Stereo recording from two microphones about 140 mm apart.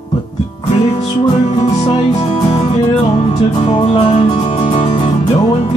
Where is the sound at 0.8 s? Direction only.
45° left (ahead or behind).